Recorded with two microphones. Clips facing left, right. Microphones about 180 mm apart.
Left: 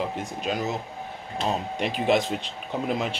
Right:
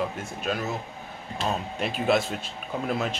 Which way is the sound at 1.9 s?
15° left (ahead or behind).